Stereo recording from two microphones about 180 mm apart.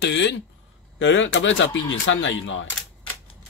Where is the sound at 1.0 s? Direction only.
90° left.